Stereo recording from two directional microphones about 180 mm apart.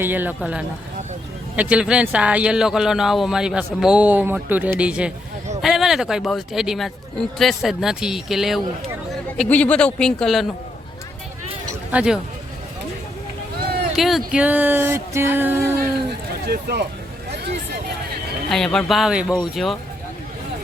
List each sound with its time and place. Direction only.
0.0 s speech: 10° right (ahead or behind)
11.9 s speech: 5° right (ahead or behind)
13.9 s speech: centre (ahead or behind)
16.5 s speech: 60° right (ahead or behind)
18.5 s speech: 5° left (ahead or behind)